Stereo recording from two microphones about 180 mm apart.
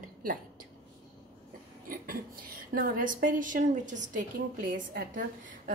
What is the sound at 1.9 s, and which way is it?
A woman's voice, 50° right (ahead or behind).